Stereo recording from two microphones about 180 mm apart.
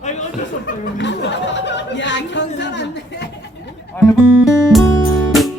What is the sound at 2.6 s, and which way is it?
Chatter, 75° left (ahead or behind).